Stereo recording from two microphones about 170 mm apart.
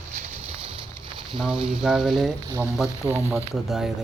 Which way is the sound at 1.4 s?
5° right (ahead or behind).